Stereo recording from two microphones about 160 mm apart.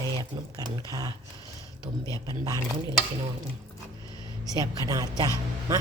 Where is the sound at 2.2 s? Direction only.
25° right (ahead or behind).